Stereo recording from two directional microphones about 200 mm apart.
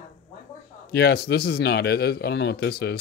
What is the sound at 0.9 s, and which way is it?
A man's voice, 55° left (ahead or behind).